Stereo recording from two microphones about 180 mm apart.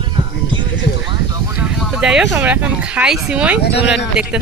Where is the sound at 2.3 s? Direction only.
10° right (ahead or behind).